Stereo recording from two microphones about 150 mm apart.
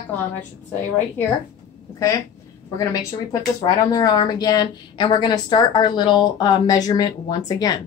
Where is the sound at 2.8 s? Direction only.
20° left (ahead or behind).